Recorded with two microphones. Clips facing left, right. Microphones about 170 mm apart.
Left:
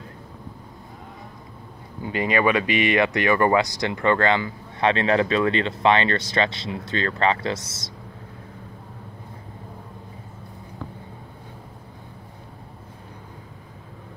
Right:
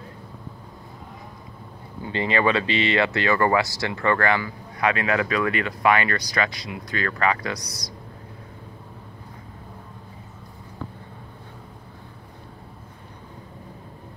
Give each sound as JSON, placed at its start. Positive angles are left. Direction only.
{"t": 2.2, "sound": "speech", "side_deg": 15}